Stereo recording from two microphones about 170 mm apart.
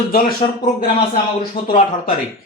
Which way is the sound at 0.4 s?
20° left (ahead or behind).